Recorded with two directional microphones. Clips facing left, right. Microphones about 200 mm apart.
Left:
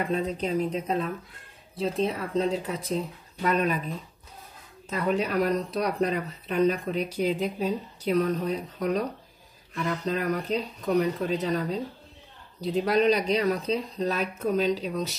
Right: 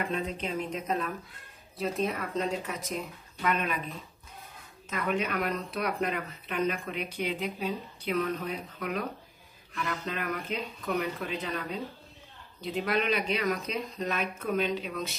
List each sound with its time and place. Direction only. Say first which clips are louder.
0.1 s speech: left 6 dB; 40° left (ahead or behind)
4.8 s speech: left 4 dB; 35° left (ahead or behind)